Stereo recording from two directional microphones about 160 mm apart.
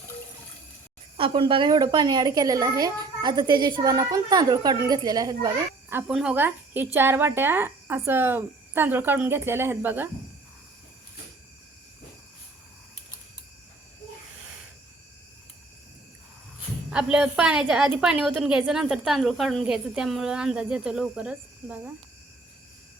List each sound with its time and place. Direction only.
1.1 s a woman's voice: 30° right (ahead or behind)
5.9 s a woman's voice: 15° right (ahead or behind)
16.9 s a woman's voice: 5° right (ahead or behind)